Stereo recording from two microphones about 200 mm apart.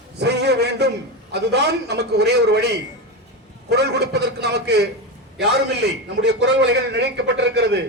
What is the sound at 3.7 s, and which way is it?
A man's voice, 55° right (ahead or behind).